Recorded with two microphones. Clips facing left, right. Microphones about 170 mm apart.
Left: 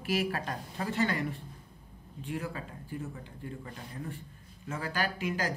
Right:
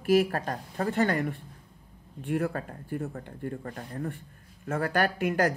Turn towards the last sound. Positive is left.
turn(degrees=-55)  # may be behind; listen again after turning